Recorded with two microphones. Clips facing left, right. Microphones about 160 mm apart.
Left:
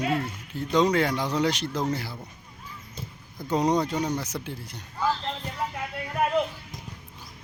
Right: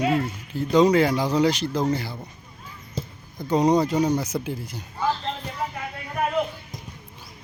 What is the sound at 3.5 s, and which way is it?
Speech, centre (ahead or behind).